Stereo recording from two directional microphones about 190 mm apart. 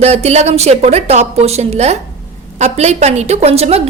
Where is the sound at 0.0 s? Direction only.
35° right (ahead or behind).